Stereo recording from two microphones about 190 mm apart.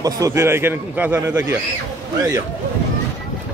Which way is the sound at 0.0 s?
15° right (ahead or behind).